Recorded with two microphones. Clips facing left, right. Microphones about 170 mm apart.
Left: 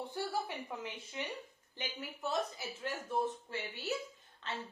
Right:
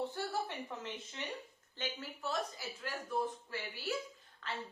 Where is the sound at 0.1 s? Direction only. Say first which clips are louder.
Left 1 dB; 10° left (ahead or behind).